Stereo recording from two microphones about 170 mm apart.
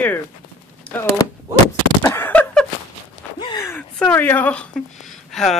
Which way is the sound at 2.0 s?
15° left (ahead or behind).